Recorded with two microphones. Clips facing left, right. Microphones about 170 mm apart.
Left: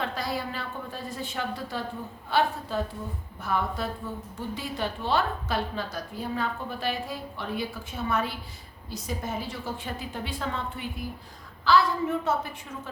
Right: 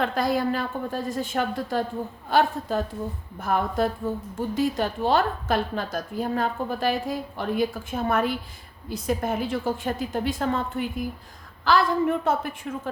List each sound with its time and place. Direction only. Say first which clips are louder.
0.0 s a woman's voice: right 7 dB; 50° right (ahead or behind)